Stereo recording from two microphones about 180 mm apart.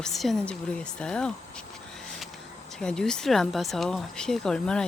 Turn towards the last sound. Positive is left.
turn(degrees=5)  # may be behind; listen again after turning